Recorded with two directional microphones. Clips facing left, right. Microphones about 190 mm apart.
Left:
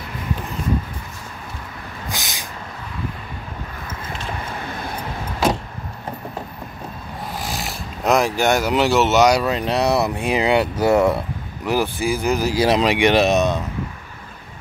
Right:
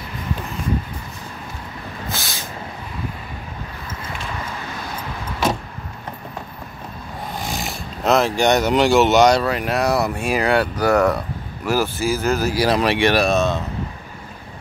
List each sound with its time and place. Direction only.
2.0 s a sound: 15° left (ahead or behind)
7.3 s snoring: centre (ahead or behind)
8.1 s speech: 10° left (ahead or behind)
9.5 s speech: 20° left (ahead or behind)